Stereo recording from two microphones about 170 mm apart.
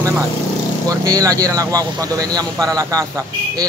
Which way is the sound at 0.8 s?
20° right (ahead or behind).